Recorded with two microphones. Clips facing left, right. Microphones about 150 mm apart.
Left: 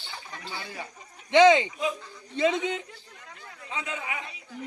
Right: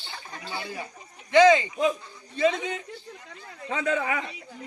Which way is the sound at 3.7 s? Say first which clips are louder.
Right 9 dB; 55° right (ahead or behind).